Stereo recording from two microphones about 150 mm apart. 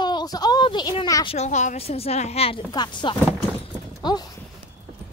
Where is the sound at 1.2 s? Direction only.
45° left (ahead or behind).